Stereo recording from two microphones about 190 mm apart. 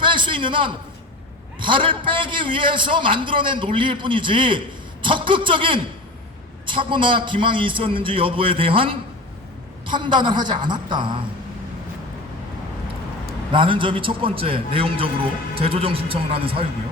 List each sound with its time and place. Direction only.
0.0 s a sound: 25° right (ahead or behind)
1.5 s a man's voice: 25° right (ahead or behind)
13.5 s a man's voice: 25° right (ahead or behind)